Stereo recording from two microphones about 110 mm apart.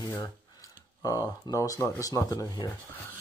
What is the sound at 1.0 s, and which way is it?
Speech, 30° left (ahead or behind).